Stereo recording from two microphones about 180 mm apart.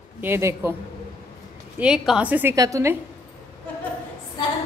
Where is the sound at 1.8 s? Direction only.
5° right (ahead or behind).